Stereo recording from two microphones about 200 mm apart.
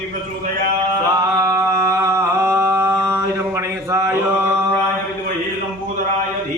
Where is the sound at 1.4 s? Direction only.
15° right (ahead or behind).